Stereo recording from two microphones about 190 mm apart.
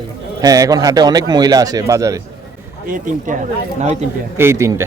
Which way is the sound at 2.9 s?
45° right (ahead or behind).